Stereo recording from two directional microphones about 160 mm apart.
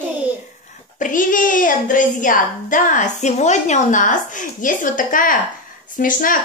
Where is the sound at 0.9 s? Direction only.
55° left (ahead or behind).